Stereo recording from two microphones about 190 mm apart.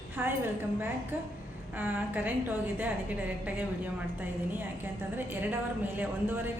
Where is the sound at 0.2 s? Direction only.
10° right (ahead or behind).